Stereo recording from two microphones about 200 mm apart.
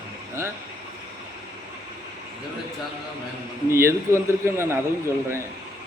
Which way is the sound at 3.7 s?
10° right (ahead or behind).